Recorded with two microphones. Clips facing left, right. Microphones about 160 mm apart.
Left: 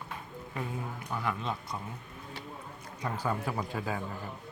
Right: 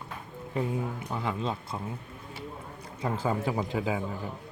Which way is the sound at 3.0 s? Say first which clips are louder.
Right 4 dB; 25° right (ahead or behind).